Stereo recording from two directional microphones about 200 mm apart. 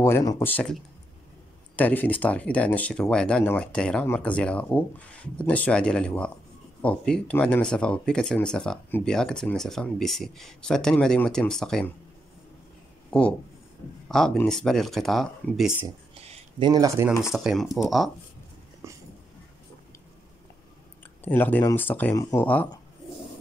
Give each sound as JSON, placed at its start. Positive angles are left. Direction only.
{"t": 0.0, "sound": "speech", "side_deg": 15}
{"t": 1.8, "sound": "speech", "side_deg": 10}
{"t": 14.0, "sound": "speech", "side_deg": 0}
{"t": 16.5, "sound": "speech", "side_deg": -20}
{"t": 17.2, "sound": "speech", "side_deg": 0}
{"t": 21.2, "sound": "speech", "side_deg": 10}